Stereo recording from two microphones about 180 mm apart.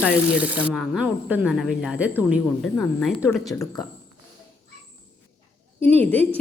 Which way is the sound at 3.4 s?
20° left (ahead or behind).